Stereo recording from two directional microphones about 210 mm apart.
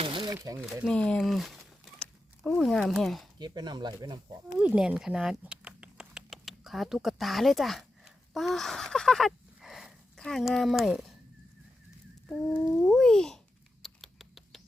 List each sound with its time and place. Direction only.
0.0 s crumpling: 20° right (ahead or behind)
0.6 s speech: centre (ahead or behind)
3.3 s speech: 20° right (ahead or behind)
4.5 s speech: 5° right (ahead or behind)
12.5 s a sound: 5° left (ahead or behind)
13.8 s rodents: centre (ahead or behind)